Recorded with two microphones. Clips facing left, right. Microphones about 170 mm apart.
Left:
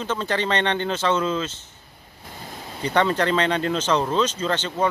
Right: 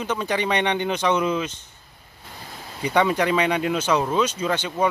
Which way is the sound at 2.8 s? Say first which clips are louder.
Right 1 dB; 10° right (ahead or behind).